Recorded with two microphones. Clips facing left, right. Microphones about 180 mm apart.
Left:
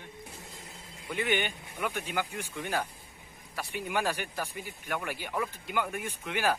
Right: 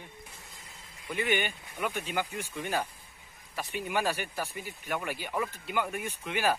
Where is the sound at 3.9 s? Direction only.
15° right (ahead or behind).